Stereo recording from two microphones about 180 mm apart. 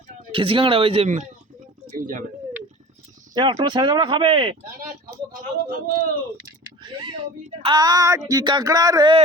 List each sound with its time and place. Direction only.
0.3 s speech: 30° right (ahead or behind); by 2.2 s 45° right (ahead or behind)
3.3 s speech: 25° right (ahead or behind)
5.9 s speech: 50° right (ahead or behind)
6.8 s speech: 25° right (ahead or behind)